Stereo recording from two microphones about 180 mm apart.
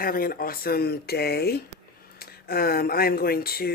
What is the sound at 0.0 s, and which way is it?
Speech, 55° left (ahead or behind).